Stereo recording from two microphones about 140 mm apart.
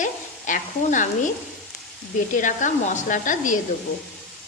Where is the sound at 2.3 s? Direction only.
70° left (ahead or behind).